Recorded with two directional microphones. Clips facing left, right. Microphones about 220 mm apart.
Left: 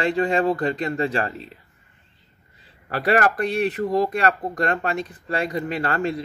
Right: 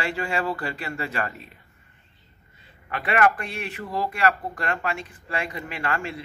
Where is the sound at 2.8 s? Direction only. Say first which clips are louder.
Left 2 dB; 40° left (ahead or behind).